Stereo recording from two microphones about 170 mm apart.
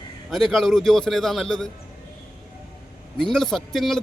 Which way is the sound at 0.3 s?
Centre (ahead or behind).